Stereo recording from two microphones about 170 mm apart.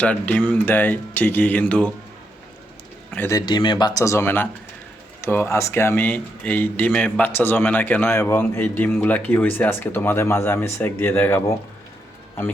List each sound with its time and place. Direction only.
0.0 s speech: 10° left (ahead or behind)
3.1 s speech: 15° left (ahead or behind)